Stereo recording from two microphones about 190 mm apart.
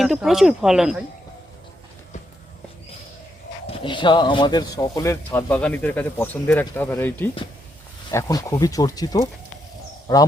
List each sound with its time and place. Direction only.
0.0 s speech: centre (ahead or behind)
3.7 s speech: 25° left (ahead or behind)